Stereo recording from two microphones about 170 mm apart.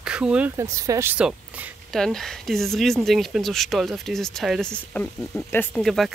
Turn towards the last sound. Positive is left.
turn(degrees=0)  # may be behind; listen again after turning